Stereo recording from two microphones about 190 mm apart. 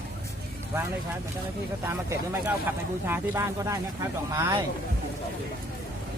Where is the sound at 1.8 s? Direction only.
15° right (ahead or behind).